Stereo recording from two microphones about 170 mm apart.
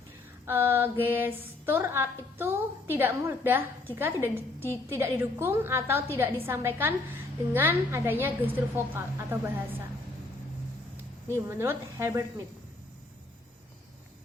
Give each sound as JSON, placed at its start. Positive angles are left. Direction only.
{"t": 0.4, "sound": "a woman's voice", "side_deg": -15}
{"t": 11.4, "sound": "a woman's voice", "side_deg": -15}